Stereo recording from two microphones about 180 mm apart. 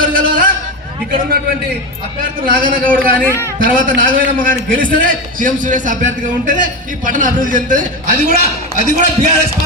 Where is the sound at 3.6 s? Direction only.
50° right (ahead or behind).